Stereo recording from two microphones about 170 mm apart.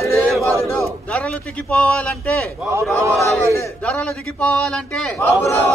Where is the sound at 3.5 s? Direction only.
10° left (ahead or behind).